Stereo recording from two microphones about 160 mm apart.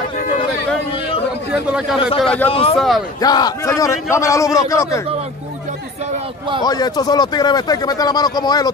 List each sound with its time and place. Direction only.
1.5 s speech: 10° right (ahead or behind)
2.2 s a man's voice: 10° left (ahead or behind)
2.5 s speech: 35° left (ahead or behind)
3.2 s speech: 25° left (ahead or behind)
6.6 s speech: 25° left (ahead or behind)